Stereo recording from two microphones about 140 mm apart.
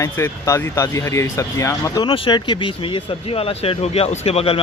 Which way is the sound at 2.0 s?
40° left (ahead or behind).